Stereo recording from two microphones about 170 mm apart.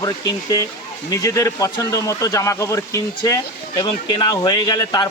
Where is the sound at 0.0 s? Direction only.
20° left (ahead or behind).